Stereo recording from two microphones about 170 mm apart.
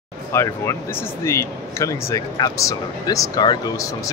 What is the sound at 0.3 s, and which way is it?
Speech, 15° left (ahead or behind).